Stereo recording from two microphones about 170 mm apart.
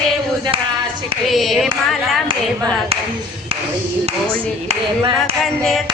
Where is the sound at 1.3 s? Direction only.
Centre (ahead or behind).